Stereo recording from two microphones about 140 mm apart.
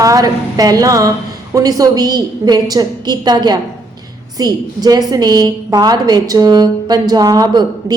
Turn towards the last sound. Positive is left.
turn(degrees=-30)  # may be behind; listen again after turning